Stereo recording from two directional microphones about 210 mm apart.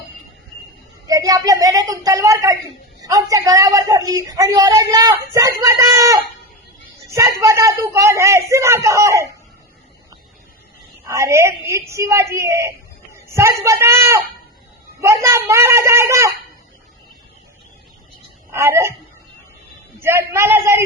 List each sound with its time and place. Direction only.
1.0 s a man's voice: 15° right (ahead or behind)
7.4 s a woman's voice: 15° right (ahead or behind)
11.0 s a woman's voice: 15° right (ahead or behind)
18.5 s a woman's voice: 15° right (ahead or behind)
20.0 s a woman's voice: 10° right (ahead or behind)